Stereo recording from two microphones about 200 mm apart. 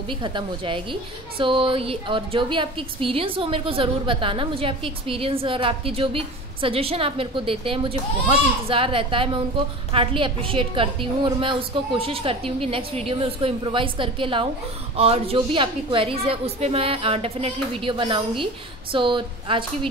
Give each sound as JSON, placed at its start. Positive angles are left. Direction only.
{"t": 0.1, "sound": "a woman's voice", "side_deg": -25}